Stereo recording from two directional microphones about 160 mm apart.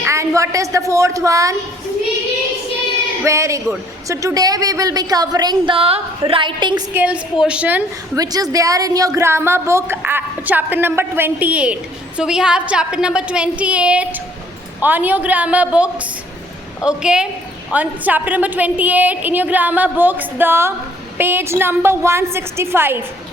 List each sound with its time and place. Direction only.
0.0 s a man's voice: 20° right (ahead or behind)
3.2 s a man's voice: 20° right (ahead or behind)
6.9 s a woman's voice: 10° right (ahead or behind)
8.1 s a woman's voice: 25° right (ahead or behind)